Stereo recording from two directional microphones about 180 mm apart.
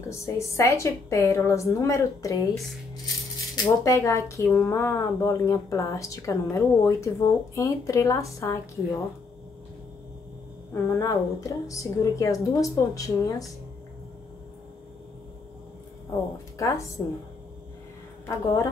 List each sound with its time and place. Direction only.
0.1 s speech: 15° left (ahead or behind)
3.5 s speech: 20° left (ahead or behind)
10.7 s speech: 15° left (ahead or behind)
16.5 s a woman's voice: 15° left (ahead or behind)
18.3 s speech: 15° left (ahead or behind)